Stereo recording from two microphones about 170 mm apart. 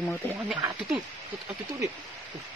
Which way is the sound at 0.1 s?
Centre (ahead or behind).